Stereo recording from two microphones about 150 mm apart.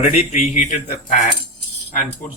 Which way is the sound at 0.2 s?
45° left (ahead or behind).